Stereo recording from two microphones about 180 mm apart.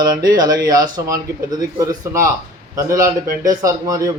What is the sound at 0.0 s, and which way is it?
A man's voice, 20° right (ahead or behind).